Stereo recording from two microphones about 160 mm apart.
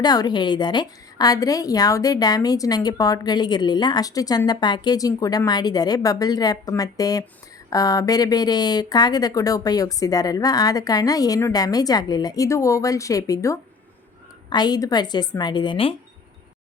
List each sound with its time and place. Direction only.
0.0 s a woman's voice: 25° left (ahead or behind)